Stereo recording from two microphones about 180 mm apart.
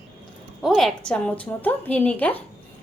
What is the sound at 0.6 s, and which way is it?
A woman's voice, centre (ahead or behind).